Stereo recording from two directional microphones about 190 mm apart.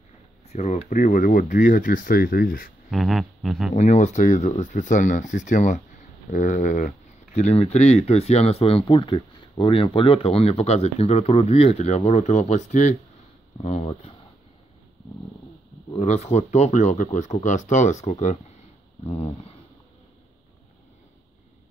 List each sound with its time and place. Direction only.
0.5 s speech: 35° left (ahead or behind)
2.9 s speech: centre (ahead or behind)
3.7 s speech: 40° left (ahead or behind)
16.0 s speech: 35° left (ahead or behind)